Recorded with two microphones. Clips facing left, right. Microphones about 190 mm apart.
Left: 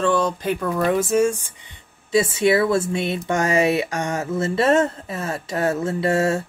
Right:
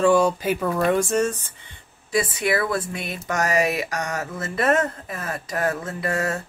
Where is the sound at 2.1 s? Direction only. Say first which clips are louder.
Left 5 dB; 25° left (ahead or behind).